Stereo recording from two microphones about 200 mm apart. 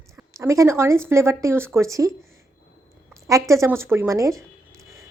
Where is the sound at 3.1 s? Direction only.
15° right (ahead or behind).